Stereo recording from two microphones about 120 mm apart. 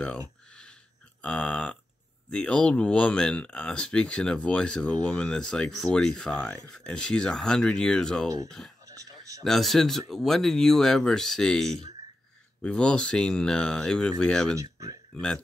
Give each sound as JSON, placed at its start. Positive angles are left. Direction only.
{"t": 1.2, "sound": "speech", "side_deg": 10}
{"t": 8.8, "sound": "a sound", "side_deg": -30}
{"t": 9.4, "sound": "speech", "side_deg": 0}
{"t": 14.6, "sound": "speech", "side_deg": -30}
{"t": 15.1, "sound": "speech", "side_deg": 5}